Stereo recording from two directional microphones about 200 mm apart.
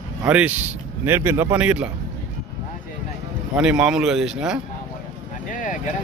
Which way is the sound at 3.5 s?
5° right (ahead or behind).